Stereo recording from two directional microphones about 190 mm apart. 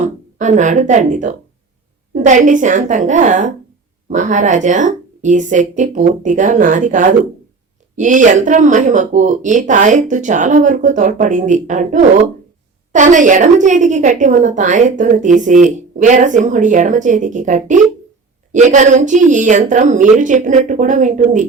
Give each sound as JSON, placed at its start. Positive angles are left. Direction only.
{"t": 0.0, "sound": "speech", "side_deg": -40}